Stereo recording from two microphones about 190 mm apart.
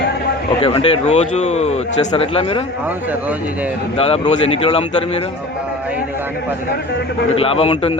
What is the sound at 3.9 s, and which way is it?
Speech, 30° left (ahead or behind).